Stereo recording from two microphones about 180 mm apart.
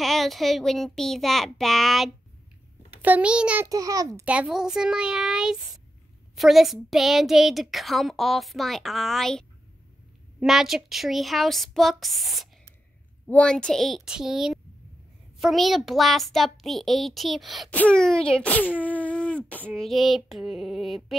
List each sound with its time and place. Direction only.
0.0 s a child's voice: centre (ahead or behind)
3.6 s a child's voice: 20° right (ahead or behind)
4.3 s a child's voice: 5° right (ahead or behind)
10.4 s a child's voice: centre (ahead or behind)